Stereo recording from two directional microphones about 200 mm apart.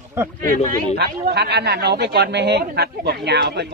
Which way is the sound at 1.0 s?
55° right (ahead or behind).